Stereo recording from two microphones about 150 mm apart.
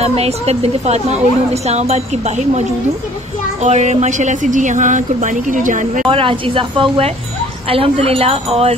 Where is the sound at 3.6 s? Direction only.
50° right (ahead or behind).